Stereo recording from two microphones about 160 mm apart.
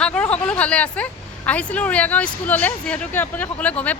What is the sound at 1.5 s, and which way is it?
Speech, 10° left (ahead or behind).